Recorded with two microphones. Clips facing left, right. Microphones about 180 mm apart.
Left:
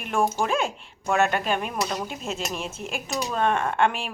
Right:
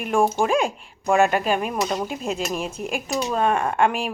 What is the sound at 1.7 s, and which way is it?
Speech, 20° right (ahead or behind).